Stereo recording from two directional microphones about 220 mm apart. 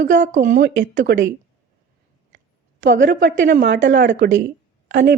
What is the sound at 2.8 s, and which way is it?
Speech, 35° right (ahead or behind).